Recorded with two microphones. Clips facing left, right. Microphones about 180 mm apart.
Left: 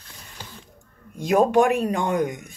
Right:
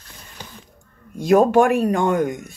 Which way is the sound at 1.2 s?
15° left (ahead or behind).